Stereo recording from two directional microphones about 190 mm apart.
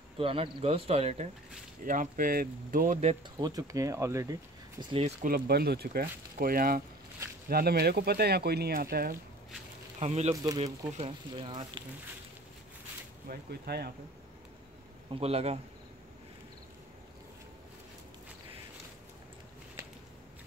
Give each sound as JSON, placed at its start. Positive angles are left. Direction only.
{"t": 0.2, "sound": "speech", "side_deg": -30}
{"t": 1.9, "sound": "speech", "side_deg": -45}
{"t": 3.3, "sound": "speech", "side_deg": -20}
{"t": 5.2, "sound": "speech", "side_deg": -50}
{"t": 9.9, "sound": "speech", "side_deg": -35}
{"t": 10.3, "sound": "speech", "side_deg": -20}
{"t": 10.9, "sound": "speech", "side_deg": -30}
{"t": 13.3, "sound": "speech", "side_deg": -55}
{"t": 15.0, "sound": "speech", "side_deg": -30}